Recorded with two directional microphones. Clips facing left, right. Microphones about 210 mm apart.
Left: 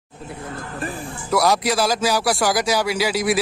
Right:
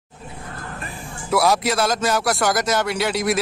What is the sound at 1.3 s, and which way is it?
Speech, centre (ahead or behind).